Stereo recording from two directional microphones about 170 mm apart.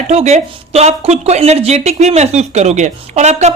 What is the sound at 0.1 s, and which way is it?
Speech, 40° right (ahead or behind).